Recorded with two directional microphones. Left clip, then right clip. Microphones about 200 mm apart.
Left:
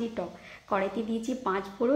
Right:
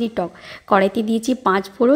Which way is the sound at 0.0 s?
45° right (ahead or behind).